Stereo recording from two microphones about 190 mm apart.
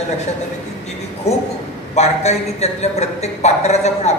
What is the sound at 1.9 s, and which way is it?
A woman's voice, 35° left (ahead or behind).